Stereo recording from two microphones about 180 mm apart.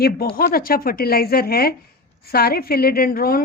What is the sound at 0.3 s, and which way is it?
A woman's voice, 55° left (ahead or behind).